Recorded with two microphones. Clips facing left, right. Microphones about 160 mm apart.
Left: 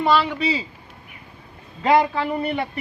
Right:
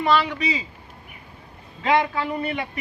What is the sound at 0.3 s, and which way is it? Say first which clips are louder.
Speech: left 3 dB; 30° left (ahead or behind).